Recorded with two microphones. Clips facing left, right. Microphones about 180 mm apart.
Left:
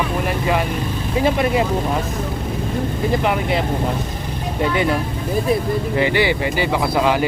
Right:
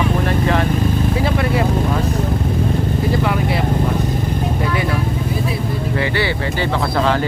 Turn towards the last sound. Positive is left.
turn(degrees=15)  # may be behind; listen again after turning